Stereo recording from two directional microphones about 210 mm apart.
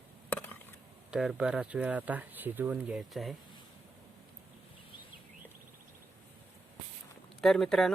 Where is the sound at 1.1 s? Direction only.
Centre (ahead or behind).